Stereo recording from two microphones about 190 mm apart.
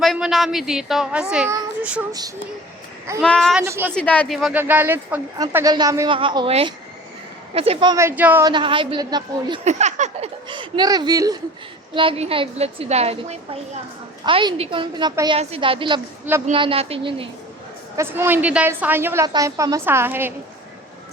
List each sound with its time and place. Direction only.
0.0 s a woman's voice: centre (ahead or behind)
3.2 s a woman's voice: 5° left (ahead or behind)
3.6 s a woman's voice: 10° right (ahead or behind)
3.9 s a woman's voice: 10° left (ahead or behind); by 8.4 s 10° right (ahead or behind)
8.4 s a woman's voice: 25° right (ahead or behind)
9.6 s a woman's voice: 35° right (ahead or behind)
10.5 s a woman's voice: 25° right (ahead or behind)
11.9 s a woman's voice: 30° right (ahead or behind)
17.9 s a woman's voice: 15° right (ahead or behind)